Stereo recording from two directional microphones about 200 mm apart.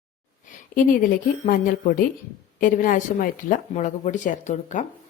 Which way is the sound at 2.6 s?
40° left (ahead or behind).